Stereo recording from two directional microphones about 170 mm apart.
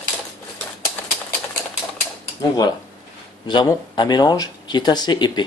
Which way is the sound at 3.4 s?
25° left (ahead or behind).